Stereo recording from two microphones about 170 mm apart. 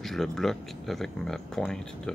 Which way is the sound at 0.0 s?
Centre (ahead or behind).